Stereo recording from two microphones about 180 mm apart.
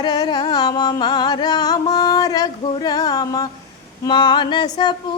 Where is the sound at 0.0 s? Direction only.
25° left (ahead or behind).